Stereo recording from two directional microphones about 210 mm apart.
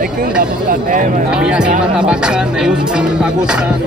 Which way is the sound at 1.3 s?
5° right (ahead or behind).